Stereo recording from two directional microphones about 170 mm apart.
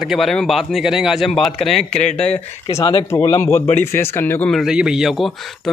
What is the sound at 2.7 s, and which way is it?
A man's voice, 20° left (ahead or behind).